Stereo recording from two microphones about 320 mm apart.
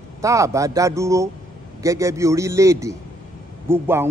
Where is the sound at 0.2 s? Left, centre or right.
Centre.